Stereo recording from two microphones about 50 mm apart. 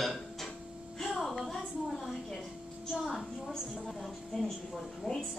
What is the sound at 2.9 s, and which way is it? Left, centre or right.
Speech, centre.